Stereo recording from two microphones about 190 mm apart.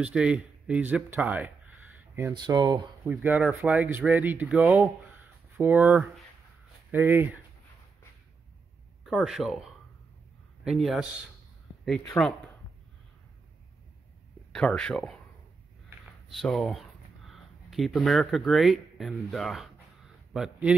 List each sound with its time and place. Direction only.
0.0 s speech: 5° right (ahead or behind)
2.0 s a sound: 10° right (ahead or behind)
2.3 s speech: 25° right (ahead or behind)
3.1 s speech: 10° right (ahead or behind)
9.0 s speech: centre (ahead or behind)
12.2 s speech: 10° left (ahead or behind)
14.5 s speech: 5° left (ahead or behind)
16.3 s speech: centre (ahead or behind)